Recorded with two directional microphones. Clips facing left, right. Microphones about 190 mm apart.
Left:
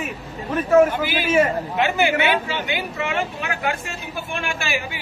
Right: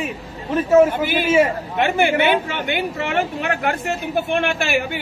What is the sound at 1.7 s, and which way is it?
A woman's voice, 50° right (ahead or behind).